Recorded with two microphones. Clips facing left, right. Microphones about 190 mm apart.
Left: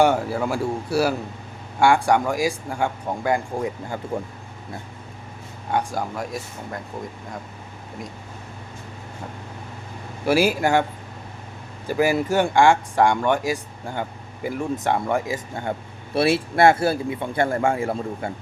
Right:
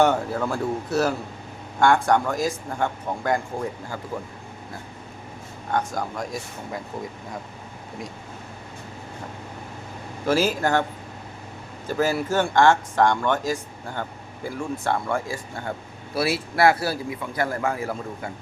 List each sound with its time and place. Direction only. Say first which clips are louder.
0.0 s speech: left 1 dB; 10° left (ahead or behind)
3.8 s a man's voice: left 4 dB; 20° left (ahead or behind)
5.7 s speech: left 1 dB; 10° left (ahead or behind)
10.2 s speech: left 2 dB; 10° left (ahead or behind)
11.9 s a man's voice: left 3 dB; 15° left (ahead or behind)